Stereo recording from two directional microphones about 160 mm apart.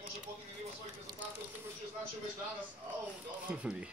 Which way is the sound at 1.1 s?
25° right (ahead or behind).